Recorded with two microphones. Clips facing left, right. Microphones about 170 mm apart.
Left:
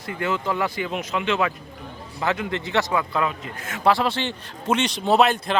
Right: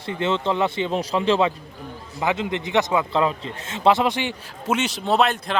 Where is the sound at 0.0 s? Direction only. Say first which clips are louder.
Right 3 dB; 25° right (ahead or behind).